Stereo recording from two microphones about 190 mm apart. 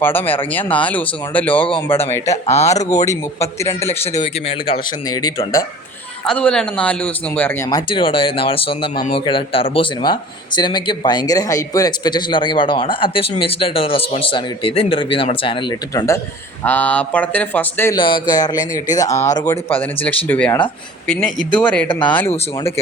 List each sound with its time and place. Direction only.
0.0 s a man's voice: 10° left (ahead or behind)
2.3 s speech: 35° left (ahead or behind)
3.6 s a man's voice: 15° left (ahead or behind)
4.2 s speech: 30° left (ahead or behind)
5.0 s speech: 20° left (ahead or behind)
6.2 s a man's voice: 5° left (ahead or behind)
7.7 s speech: 25° left (ahead or behind)
16.6 s a man's voice: 10° left (ahead or behind)
17.9 s a man's voice: 25° left (ahead or behind); by 21.8 s 5° left (ahead or behind)
21.8 s speech: 25° left (ahead or behind)